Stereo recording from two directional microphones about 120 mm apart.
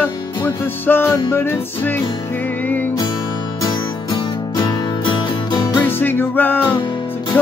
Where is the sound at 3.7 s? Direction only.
40° left (ahead or behind).